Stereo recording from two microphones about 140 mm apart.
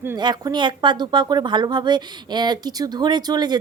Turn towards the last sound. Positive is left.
turn(degrees=-30)  # may be behind; listen again after turning